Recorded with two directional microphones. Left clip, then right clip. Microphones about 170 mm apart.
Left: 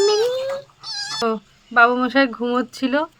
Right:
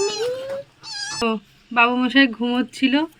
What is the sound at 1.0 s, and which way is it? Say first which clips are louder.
Speech: left 1 dB; 25° left (ahead or behind).